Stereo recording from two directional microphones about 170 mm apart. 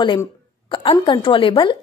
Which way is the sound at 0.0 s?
25° left (ahead or behind).